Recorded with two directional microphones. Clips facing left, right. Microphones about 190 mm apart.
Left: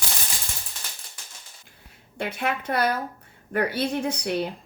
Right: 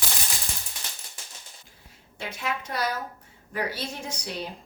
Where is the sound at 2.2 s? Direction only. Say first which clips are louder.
Left 5 dB; 60° left (ahead or behind).